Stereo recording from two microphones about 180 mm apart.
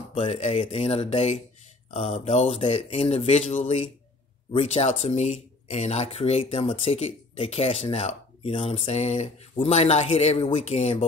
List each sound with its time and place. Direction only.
0.1 s speech: 35° left (ahead or behind)